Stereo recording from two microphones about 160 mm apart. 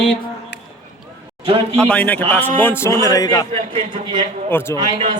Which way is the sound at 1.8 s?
10° left (ahead or behind).